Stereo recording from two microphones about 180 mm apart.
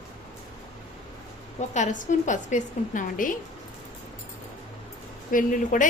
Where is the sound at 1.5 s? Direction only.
40° left (ahead or behind).